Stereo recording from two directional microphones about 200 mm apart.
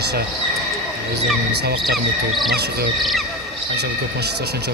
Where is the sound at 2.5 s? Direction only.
55° right (ahead or behind).